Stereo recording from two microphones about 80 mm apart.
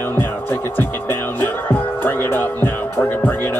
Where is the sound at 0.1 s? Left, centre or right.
Left.